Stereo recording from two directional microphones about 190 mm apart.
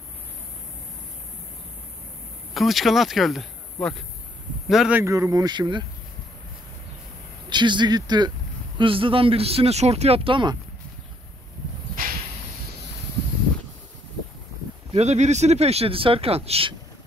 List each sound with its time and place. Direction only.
2.5 s speech: centre (ahead or behind); by 5.9 s 25° right (ahead or behind)
7.4 s speech: 25° right (ahead or behind)
15.0 s speech: 35° right (ahead or behind)